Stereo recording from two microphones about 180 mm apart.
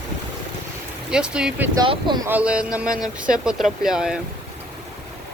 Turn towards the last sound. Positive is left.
turn(degrees=-5)  # may be behind; listen again after turning